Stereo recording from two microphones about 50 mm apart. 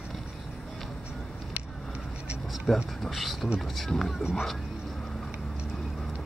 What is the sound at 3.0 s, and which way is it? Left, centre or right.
Speech, centre.